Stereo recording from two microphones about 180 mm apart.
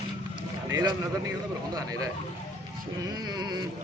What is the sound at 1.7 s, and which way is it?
Music, 20° right (ahead or behind).